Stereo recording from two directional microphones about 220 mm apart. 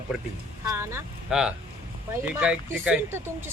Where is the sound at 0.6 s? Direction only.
15° right (ahead or behind).